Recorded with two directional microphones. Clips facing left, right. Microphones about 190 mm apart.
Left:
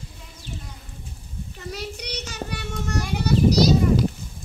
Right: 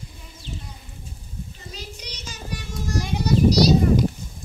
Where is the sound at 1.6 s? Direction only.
65° left (ahead or behind).